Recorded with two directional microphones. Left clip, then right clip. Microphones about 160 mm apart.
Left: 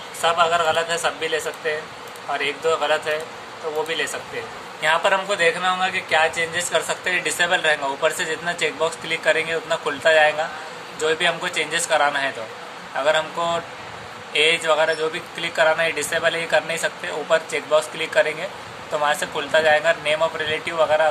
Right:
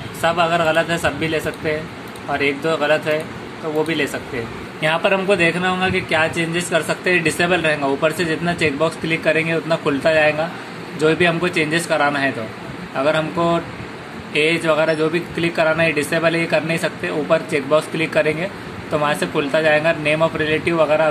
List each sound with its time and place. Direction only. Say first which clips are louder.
0.2 s speech: right 1 dB; 20° right (ahead or behind)